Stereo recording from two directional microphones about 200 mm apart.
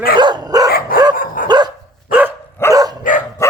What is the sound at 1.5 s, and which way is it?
Dog, 20° right (ahead or behind).